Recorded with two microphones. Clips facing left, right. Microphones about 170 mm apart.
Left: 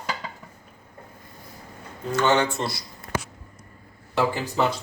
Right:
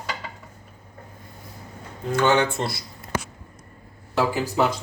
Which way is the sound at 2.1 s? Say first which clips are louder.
Right 1 dB; 55° right (ahead or behind).